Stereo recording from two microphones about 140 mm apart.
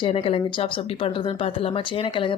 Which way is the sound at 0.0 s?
40° left (ahead or behind).